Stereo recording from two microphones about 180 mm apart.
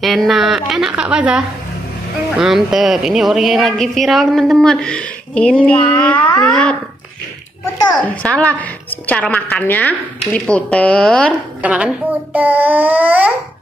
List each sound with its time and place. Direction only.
0.0 s a woman's voice: centre (ahead or behind)
8.0 s a woman's voice: 5° left (ahead or behind)
11.6 s a child's voice: 5° right (ahead or behind)